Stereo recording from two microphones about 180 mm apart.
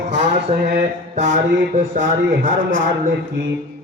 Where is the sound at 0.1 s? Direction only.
40° right (ahead or behind).